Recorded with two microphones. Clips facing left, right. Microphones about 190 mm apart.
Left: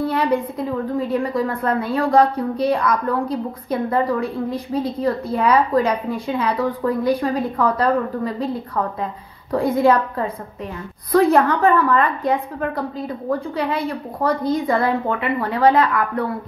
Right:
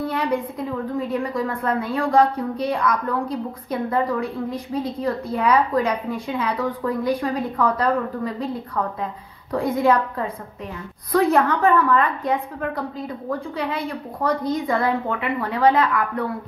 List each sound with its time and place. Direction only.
0.0 s a woman's voice: 35° left (ahead or behind)